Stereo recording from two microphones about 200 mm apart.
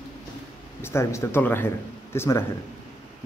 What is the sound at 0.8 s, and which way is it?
Speech, 10° left (ahead or behind).